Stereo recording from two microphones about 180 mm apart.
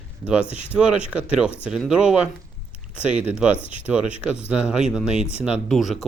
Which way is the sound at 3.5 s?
30° left (ahead or behind).